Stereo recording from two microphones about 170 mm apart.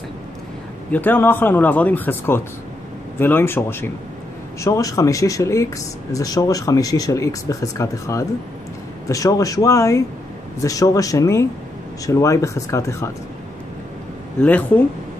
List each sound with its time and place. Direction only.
0.9 s speech: 10° left (ahead or behind)
14.4 s speech: 10° left (ahead or behind)